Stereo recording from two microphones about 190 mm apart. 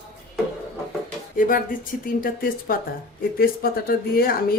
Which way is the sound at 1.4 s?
45° left (ahead or behind).